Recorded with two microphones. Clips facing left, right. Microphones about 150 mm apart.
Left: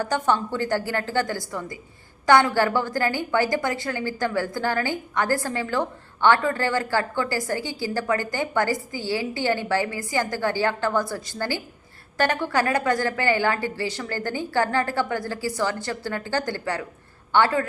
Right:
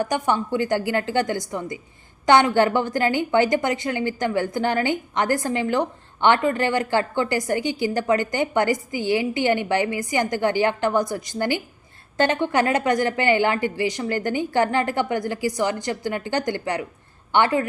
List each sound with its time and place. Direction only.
0.0 s a woman's voice: 15° right (ahead or behind)